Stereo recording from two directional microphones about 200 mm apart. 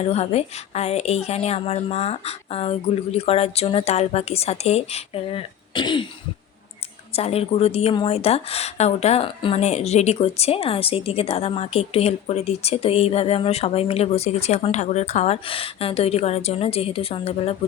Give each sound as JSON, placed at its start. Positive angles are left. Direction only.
{"t": 0.1, "sound": "a woman's voice", "side_deg": 30}
{"t": 7.1, "sound": "a woman's voice", "side_deg": 30}